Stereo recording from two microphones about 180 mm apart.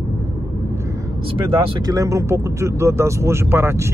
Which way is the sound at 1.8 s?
20° right (ahead or behind).